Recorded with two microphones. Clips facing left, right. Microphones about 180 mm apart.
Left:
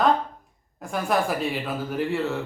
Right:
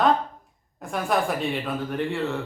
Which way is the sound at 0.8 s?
Centre (ahead or behind).